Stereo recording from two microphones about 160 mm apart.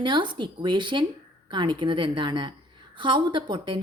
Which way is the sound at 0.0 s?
30° right (ahead or behind).